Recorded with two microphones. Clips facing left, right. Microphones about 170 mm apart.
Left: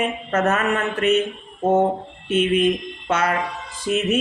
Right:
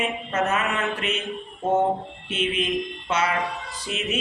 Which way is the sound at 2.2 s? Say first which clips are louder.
Left 9 dB; 50° left (ahead or behind).